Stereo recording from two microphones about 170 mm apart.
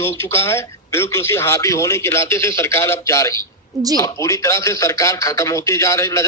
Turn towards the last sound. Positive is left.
turn(degrees=15)  # may be behind; listen again after turning